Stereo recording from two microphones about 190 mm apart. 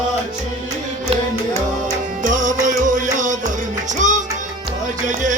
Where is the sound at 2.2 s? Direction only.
40° right (ahead or behind).